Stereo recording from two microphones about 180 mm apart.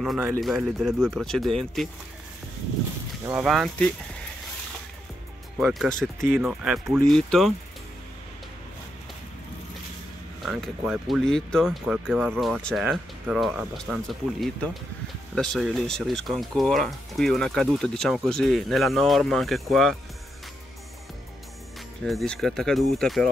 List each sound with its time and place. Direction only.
0.0 s speech: 5° right (ahead or behind)
3.3 s speech: 10° right (ahead or behind)
3.5 s speech: 5° left (ahead or behind)
5.6 s speech: centre (ahead or behind)
10.4 s speech: centre (ahead or behind)
22.0 s speech: centre (ahead or behind)